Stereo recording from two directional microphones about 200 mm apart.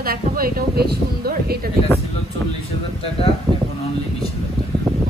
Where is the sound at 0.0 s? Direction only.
50° right (ahead or behind).